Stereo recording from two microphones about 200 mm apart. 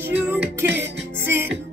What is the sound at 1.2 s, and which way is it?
Music, 10° right (ahead or behind).